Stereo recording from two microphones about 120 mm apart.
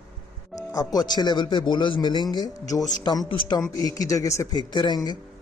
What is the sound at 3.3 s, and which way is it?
Speech, 45° left (ahead or behind).